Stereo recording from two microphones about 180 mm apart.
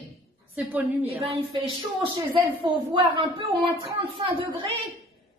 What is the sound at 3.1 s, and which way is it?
Speech, 30° right (ahead or behind).